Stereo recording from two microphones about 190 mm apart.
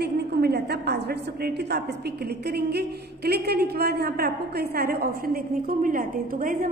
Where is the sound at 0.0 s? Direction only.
55° right (ahead or behind).